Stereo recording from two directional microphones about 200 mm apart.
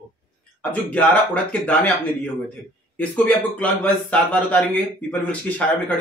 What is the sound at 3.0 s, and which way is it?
A man's voice, 5° left (ahead or behind).